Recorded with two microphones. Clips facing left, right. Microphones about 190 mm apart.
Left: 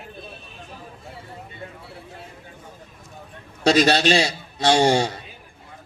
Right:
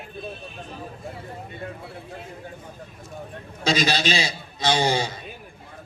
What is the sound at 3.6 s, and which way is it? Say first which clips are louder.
A man's voice: left 6 dB; 65° left (ahead or behind).